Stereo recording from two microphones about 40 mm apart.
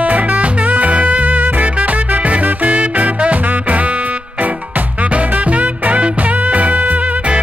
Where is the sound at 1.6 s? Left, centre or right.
Right.